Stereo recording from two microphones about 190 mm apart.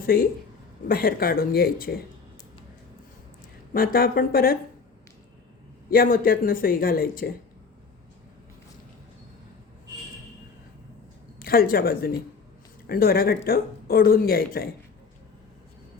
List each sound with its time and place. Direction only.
0.0 s speech: 50° left (ahead or behind)
3.7 s speech: 50° left (ahead or behind)
5.9 s speech: 50° left (ahead or behind)
11.3 s speech: 50° left (ahead or behind)